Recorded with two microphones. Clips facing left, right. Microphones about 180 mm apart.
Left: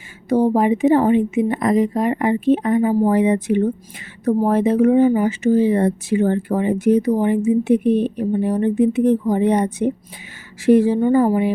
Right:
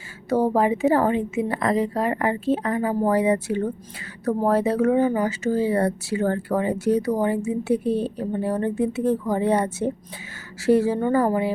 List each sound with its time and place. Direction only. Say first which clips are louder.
0.3 s speech: left 4 dB; 15° left (ahead or behind)